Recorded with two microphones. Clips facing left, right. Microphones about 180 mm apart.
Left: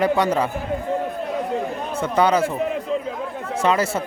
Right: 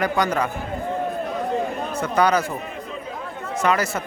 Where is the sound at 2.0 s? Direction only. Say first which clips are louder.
Left 2 dB; 25° left (ahead or behind).